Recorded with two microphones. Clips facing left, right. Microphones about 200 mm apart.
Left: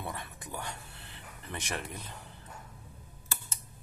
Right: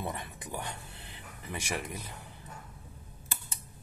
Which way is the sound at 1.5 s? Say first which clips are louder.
Right 2 dB; 10° right (ahead or behind).